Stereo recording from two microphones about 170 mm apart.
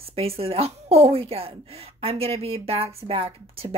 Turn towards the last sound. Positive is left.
turn(degrees=-35)  # may be behind; listen again after turning